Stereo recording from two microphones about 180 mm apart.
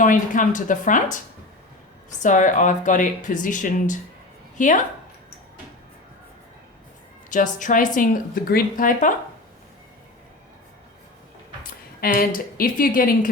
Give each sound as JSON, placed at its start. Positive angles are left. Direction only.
{"t": 0.0, "sound": "speech", "side_deg": 45}
{"t": 2.2, "sound": "speech", "side_deg": 45}
{"t": 7.3, "sound": "speech", "side_deg": 45}
{"t": 11.6, "sound": "speech", "side_deg": 55}